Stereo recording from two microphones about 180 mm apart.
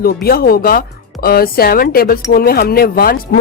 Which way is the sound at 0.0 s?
55° left (ahead or behind).